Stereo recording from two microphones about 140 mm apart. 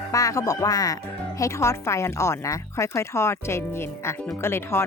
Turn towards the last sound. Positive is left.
turn(degrees=20)  # may be behind; listen again after turning